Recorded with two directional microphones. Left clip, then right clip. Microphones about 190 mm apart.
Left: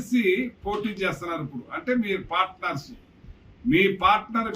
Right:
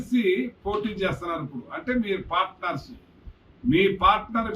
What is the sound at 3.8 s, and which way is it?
Speech, 5° left (ahead or behind).